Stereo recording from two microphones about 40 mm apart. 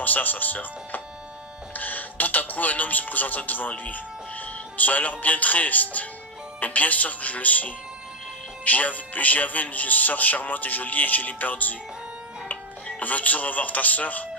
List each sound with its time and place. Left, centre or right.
0.0 s speech: left
13.0 s speech: left